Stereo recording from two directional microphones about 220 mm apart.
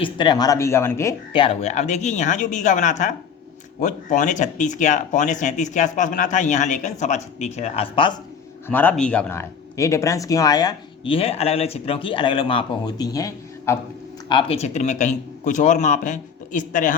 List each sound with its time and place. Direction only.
0.0 s speech: 20° left (ahead or behind)
1.3 s speech: 25° left (ahead or behind)
8.6 s speech: 10° left (ahead or behind); by 16.9 s 35° left (ahead or behind)